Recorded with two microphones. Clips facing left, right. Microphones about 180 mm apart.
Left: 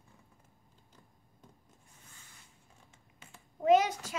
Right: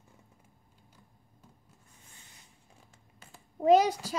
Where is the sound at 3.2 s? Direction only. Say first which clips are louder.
Right 3 dB; 35° right (ahead or behind).